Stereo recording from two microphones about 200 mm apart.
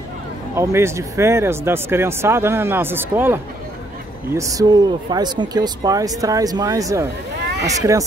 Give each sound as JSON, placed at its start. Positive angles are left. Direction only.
{"t": 0.6, "sound": "speech", "side_deg": -15}